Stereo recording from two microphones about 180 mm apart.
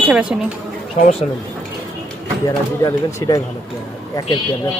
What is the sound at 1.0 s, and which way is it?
Speech, 40° left (ahead or behind).